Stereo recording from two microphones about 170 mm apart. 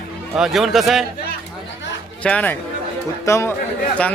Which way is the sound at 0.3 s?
Centre (ahead or behind).